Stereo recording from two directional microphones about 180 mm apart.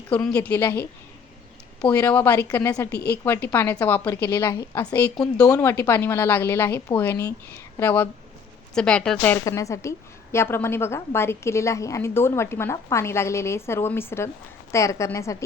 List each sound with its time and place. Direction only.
0.1 s a woman's voice: 5° left (ahead or behind)
9.4 s a woman's voice: 20° left (ahead or behind)